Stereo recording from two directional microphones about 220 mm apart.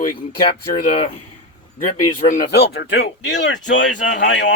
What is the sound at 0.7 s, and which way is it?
Speech, 25° left (ahead or behind).